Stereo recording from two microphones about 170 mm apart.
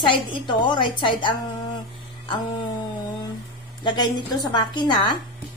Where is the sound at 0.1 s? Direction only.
25° left (ahead or behind).